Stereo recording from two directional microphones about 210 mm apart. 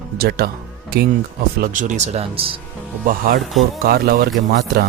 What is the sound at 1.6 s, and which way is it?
Speech, 35° right (ahead or behind).